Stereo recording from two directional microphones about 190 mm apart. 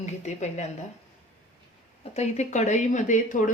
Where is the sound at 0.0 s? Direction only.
40° left (ahead or behind).